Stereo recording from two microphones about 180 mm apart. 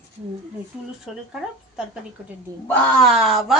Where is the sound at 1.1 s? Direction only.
Centre (ahead or behind).